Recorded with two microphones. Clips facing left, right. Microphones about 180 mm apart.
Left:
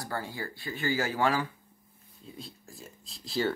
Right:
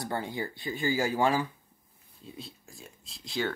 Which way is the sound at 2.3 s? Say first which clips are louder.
Left 2 dB; centre (ahead or behind).